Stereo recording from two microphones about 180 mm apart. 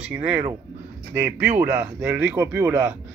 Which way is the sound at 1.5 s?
10° right (ahead or behind).